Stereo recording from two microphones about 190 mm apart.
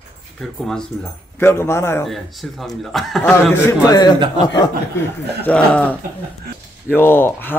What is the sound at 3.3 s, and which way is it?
A man's voice, 15° left (ahead or behind).